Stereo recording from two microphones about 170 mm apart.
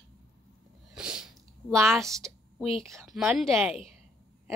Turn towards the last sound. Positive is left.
turn(degrees=0)  # may be behind; listen again after turning